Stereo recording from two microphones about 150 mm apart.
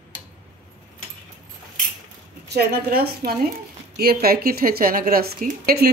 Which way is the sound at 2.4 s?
90° right.